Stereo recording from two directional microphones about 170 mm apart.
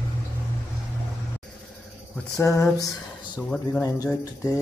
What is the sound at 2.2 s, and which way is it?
Speech, 20° left (ahead or behind).